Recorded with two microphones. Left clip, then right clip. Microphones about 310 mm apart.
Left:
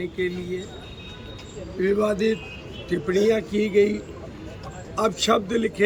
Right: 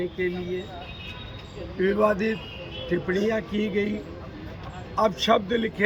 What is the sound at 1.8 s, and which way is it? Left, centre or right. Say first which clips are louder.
A man's voice: left 1 dB; centre.